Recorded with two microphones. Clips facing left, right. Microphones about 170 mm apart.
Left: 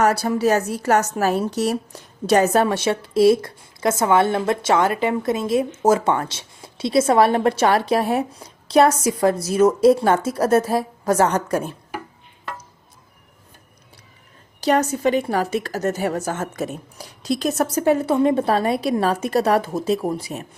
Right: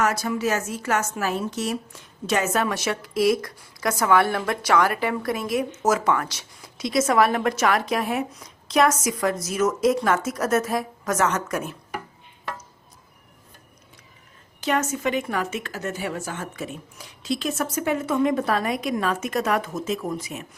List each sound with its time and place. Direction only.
0.0 s a woman's voice: 35° left (ahead or behind)
14.6 s a woman's voice: 35° left (ahead or behind)